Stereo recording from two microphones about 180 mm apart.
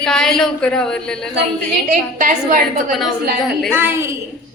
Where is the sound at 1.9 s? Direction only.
45° right (ahead or behind).